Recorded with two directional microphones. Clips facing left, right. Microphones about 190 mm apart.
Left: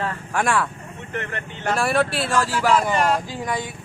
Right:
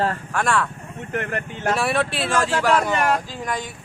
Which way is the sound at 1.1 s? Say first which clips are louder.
Right 4 dB; 45° right (ahead or behind).